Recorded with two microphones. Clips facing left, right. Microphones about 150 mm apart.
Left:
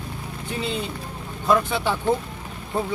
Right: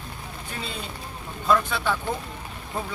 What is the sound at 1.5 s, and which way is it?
Speech, 20° left (ahead or behind).